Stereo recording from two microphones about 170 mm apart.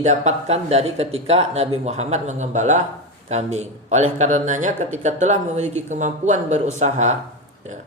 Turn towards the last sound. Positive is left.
turn(degrees=-45)  # may be behind; listen again after turning